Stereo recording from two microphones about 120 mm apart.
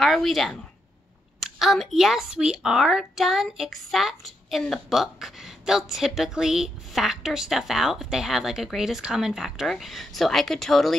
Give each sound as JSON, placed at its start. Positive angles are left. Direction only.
{"t": 0.0, "sound": "a woman's voice", "side_deg": 0}
{"t": 1.6, "sound": "a woman's voice", "side_deg": 0}